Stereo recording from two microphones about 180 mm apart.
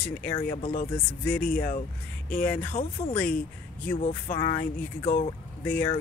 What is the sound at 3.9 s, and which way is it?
Speech, 40° left (ahead or behind).